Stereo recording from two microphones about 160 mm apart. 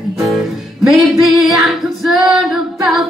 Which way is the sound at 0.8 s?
Centre (ahead or behind).